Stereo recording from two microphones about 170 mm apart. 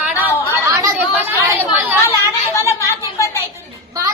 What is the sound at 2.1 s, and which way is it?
Speech, 15° left (ahead or behind).